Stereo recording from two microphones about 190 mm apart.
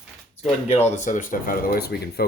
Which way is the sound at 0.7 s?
35° left (ahead or behind).